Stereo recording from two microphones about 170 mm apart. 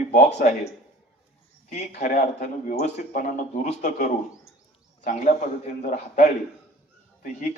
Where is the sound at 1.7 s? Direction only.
45° left (ahead or behind).